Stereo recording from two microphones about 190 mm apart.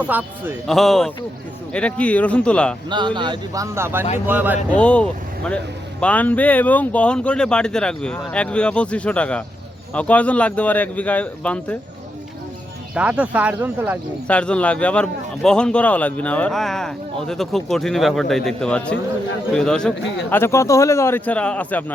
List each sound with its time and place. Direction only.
0.1 s a man's voice: 10° right (ahead or behind)
2.9 s speech: 25° right (ahead or behind); by 4.5 s 10° right (ahead or behind)
4.7 s a man's voice: 5° left (ahead or behind)
12.9 s speech: 5° right (ahead or behind)
14.3 s a man's voice: 5° left (ahead or behind)